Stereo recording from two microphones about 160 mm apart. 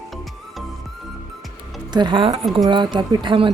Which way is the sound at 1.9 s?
25° right (ahead or behind).